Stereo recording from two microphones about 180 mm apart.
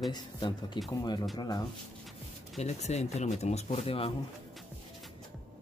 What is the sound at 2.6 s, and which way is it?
Speech, 40° left (ahead or behind).